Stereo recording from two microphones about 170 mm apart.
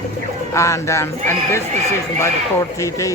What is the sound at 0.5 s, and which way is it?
Speech, 15° left (ahead or behind).